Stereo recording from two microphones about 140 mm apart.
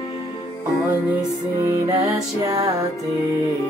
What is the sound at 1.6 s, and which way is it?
Music, 25° right (ahead or behind).